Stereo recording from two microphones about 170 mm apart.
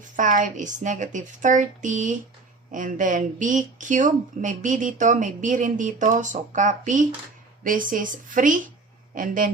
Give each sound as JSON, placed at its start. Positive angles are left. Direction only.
{"t": 0.2, "sound": "speech", "side_deg": -50}